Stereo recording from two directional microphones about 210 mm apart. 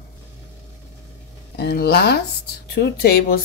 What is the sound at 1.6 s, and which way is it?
Speech, 50° left (ahead or behind).